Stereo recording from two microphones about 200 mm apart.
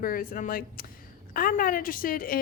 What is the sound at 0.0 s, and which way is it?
A woman's voice, 45° left (ahead or behind).